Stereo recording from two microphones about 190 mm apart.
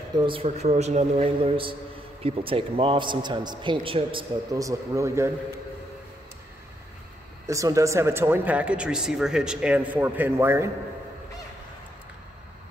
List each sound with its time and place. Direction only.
0.2 s a man's voice: 30° right (ahead or behind)
7.4 s speech: 15° right (ahead or behind)